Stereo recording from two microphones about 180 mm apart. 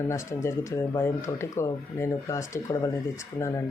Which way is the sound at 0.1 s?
15° left (ahead or behind).